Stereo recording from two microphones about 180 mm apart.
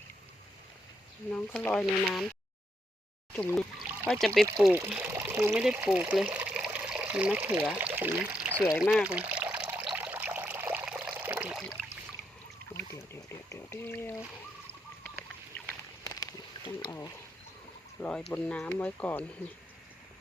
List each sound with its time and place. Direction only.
1.3 s speech: 10° left (ahead or behind)
3.3 s speech: 5° left (ahead or behind)
3.8 s pour: 10° right (ahead or behind)
4.7 s speech: 10° right (ahead or behind)
8.7 s water: centre (ahead or behind)
12.7 s a sound: 15° left (ahead or behind)
15.0 s goose: 5° left (ahead or behind)
16.0 s a sound: 25° left (ahead or behind)
18.3 s speech: 5° left (ahead or behind)